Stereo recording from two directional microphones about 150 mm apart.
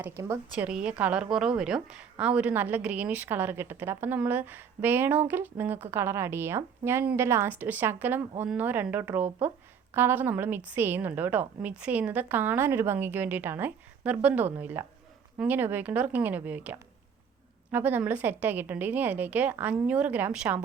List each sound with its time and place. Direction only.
0.0 s speech: 20° right (ahead or behind)
0.5 s a woman's voice: 5° right (ahead or behind)